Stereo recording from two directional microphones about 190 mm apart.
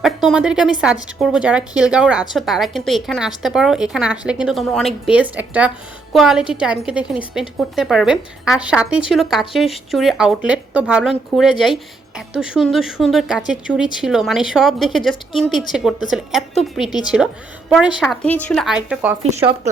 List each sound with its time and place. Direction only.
0.0 s a woman's voice: centre (ahead or behind)
19.2 s speech: 35° right (ahead or behind)